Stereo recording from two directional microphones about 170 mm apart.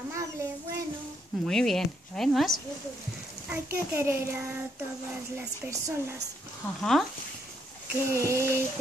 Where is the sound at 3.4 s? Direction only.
15° right (ahead or behind).